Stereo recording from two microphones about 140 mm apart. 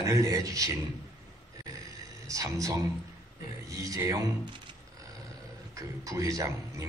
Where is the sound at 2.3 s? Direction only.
25° right (ahead or behind).